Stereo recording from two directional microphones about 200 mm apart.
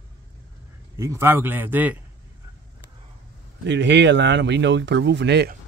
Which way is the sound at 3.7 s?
60° right (ahead or behind).